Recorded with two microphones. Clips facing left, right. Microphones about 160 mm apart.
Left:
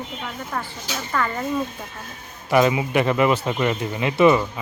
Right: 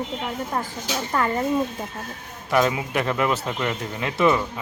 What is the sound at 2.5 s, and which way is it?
Speech, 5° left (ahead or behind).